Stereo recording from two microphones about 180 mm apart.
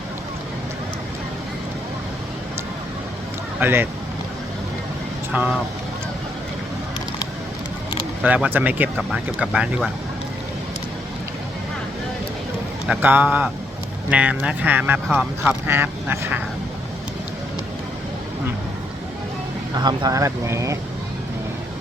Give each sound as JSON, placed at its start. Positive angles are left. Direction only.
{"t": 3.6, "sound": "speech", "side_deg": -10}
{"t": 5.3, "sound": "speech", "side_deg": -5}
{"t": 8.2, "sound": "speech", "side_deg": -10}
{"t": 12.9, "sound": "speech", "side_deg": -10}
{"t": 19.7, "sound": "speech", "side_deg": -25}